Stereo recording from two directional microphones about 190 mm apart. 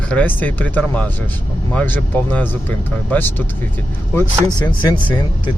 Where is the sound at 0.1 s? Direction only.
10° left (ahead or behind).